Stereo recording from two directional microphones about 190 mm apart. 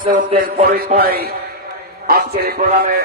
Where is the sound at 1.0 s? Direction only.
55° right (ahead or behind).